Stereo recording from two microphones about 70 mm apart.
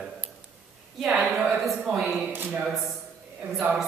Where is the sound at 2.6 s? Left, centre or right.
Centre.